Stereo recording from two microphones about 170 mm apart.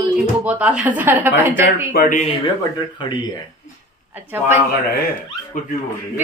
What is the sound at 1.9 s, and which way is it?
Speech, 65° left (ahead or behind).